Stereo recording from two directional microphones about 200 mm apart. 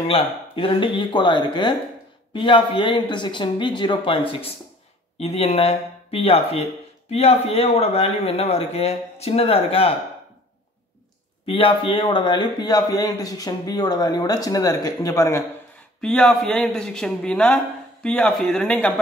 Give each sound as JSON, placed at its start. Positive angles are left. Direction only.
{"t": 0.1, "sound": "a man's voice", "side_deg": 25}
{"t": 11.4, "sound": "a man's voice", "side_deg": 25}
{"t": 16.0, "sound": "a man's voice", "side_deg": 5}